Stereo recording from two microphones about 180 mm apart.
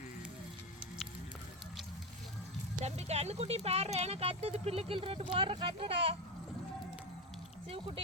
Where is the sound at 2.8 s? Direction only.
35° right (ahead or behind).